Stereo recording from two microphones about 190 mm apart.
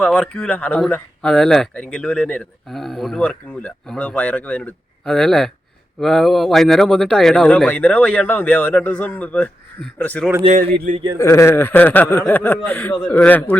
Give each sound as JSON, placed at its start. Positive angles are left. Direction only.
{"t": 0.0, "sound": "speech", "side_deg": 5}
{"t": 10.4, "sound": "a sound", "side_deg": -30}
{"t": 10.9, "sound": "a man's voice", "side_deg": -45}
{"t": 11.2, "sound": "speech", "side_deg": 15}